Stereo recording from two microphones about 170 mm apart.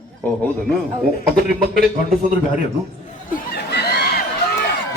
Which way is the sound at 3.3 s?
65° left (ahead or behind).